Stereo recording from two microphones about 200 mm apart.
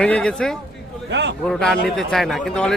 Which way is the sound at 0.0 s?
5° left (ahead or behind).